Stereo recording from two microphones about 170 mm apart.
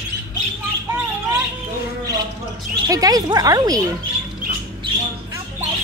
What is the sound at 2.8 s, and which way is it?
Speech, 20° right (ahead or behind).